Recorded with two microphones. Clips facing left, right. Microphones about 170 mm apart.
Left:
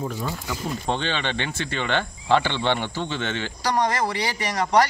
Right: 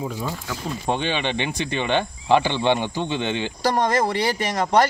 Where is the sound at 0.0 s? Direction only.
5° right (ahead or behind).